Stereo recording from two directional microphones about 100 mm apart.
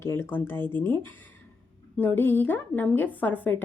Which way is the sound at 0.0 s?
25° left (ahead or behind).